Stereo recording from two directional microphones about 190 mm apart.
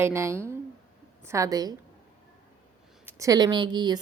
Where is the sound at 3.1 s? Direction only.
15° right (ahead or behind).